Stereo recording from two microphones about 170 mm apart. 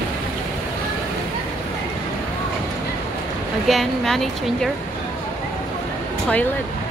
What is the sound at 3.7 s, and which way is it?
Speech, centre (ahead or behind).